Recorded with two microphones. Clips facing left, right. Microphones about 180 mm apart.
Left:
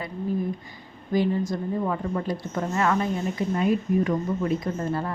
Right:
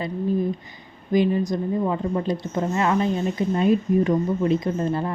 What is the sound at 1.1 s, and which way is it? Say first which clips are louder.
A woman's voice: right 3 dB; 15° right (ahead or behind).